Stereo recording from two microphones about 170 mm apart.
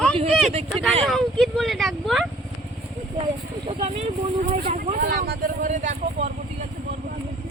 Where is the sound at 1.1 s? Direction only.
Centre (ahead or behind).